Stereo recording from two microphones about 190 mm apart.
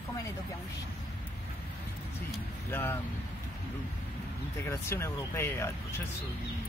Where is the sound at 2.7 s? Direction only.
10° left (ahead or behind).